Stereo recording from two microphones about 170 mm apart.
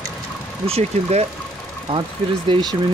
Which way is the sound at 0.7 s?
40° right (ahead or behind).